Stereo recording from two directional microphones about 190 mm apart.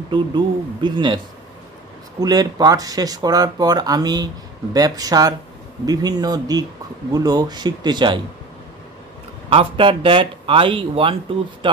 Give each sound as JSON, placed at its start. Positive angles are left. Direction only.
{"t": 0.1, "sound": "speech", "side_deg": -25}
{"t": 9.5, "sound": "speech", "side_deg": -30}